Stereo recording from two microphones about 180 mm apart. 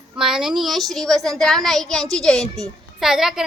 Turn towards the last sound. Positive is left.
turn(degrees=0)  # may be behind; listen again after turning